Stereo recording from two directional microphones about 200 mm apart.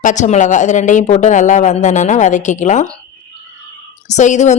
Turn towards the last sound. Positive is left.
turn(degrees=35)  # may be behind; listen again after turning